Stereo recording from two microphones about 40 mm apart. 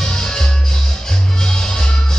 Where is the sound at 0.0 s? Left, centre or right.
Centre.